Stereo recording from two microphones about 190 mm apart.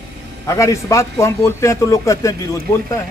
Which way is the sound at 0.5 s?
15° left (ahead or behind).